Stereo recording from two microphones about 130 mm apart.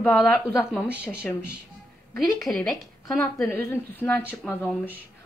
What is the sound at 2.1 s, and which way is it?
A woman's voice, 25° left (ahead or behind).